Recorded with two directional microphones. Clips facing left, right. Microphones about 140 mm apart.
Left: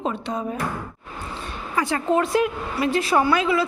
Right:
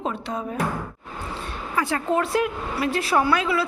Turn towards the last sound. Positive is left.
turn(degrees=-5)  # may be behind; listen again after turning